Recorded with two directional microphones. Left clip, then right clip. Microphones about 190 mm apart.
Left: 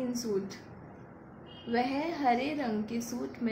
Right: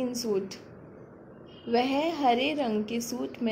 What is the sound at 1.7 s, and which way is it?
A woman's voice, 30° right (ahead or behind).